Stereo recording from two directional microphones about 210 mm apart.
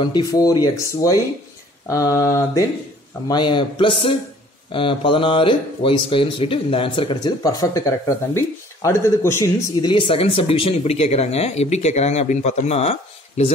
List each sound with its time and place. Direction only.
0.0 s speech: 20° left (ahead or behind)